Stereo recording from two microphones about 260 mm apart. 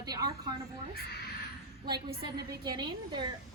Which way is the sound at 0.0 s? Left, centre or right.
Centre.